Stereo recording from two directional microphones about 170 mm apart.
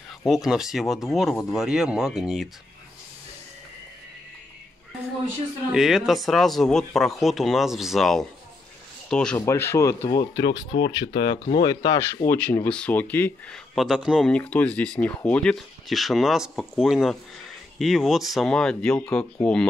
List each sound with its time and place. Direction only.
0.2 s speech: centre (ahead or behind)
5.7 s speech: centre (ahead or behind)
9.5 s speech: 15° left (ahead or behind)